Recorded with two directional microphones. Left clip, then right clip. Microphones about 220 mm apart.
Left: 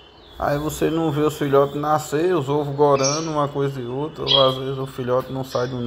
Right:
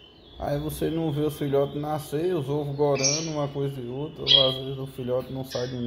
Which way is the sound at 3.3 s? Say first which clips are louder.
Left 7 dB; 15° left (ahead or behind).